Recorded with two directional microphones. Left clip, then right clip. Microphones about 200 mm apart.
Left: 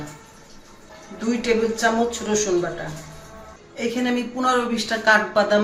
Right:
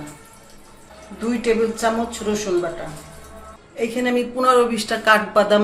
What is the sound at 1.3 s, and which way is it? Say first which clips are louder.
A man's voice: right 1 dB; 10° right (ahead or behind).